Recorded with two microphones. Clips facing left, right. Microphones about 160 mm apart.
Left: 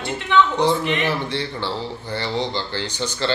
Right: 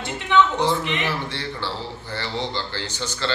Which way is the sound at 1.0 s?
20° left (ahead or behind).